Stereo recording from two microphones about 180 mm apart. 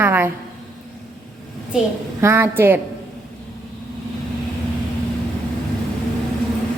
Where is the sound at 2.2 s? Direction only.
15° right (ahead or behind).